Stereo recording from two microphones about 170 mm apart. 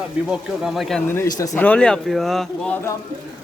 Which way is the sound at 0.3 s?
Centre (ahead or behind).